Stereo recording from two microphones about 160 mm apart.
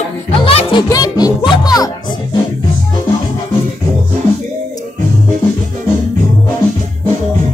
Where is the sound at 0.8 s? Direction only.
25° left (ahead or behind).